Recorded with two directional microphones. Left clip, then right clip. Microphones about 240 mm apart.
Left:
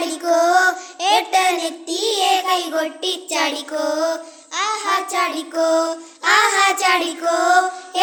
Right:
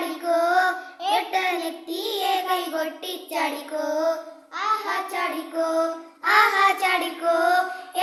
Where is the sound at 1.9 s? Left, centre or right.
Centre.